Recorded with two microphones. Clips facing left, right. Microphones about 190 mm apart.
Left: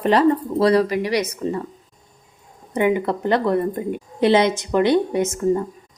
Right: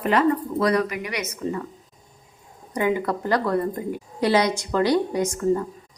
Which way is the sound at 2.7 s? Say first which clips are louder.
Left 4 dB; 20° left (ahead or behind).